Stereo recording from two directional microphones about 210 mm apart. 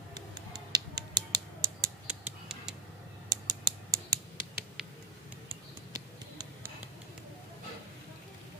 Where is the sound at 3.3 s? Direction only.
15° right (ahead or behind).